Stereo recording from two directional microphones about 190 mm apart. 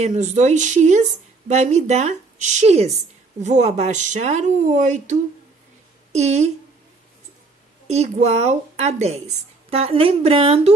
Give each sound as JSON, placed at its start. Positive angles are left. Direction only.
{"t": 0.0, "sound": "speech", "side_deg": -35}
{"t": 7.8, "sound": "speech", "side_deg": -35}